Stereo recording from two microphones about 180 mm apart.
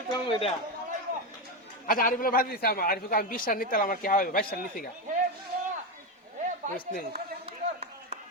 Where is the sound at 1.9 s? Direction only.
50° left (ahead or behind).